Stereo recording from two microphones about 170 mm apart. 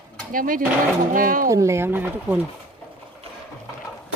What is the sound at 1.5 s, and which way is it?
Speech, 15° right (ahead or behind).